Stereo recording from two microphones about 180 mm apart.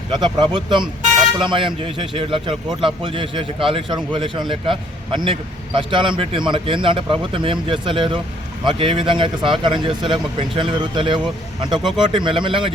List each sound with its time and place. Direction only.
0.1 s speech: 25° right (ahead or behind)
11.8 s speech: centre (ahead or behind)
12.0 s speech: 25° right (ahead or behind)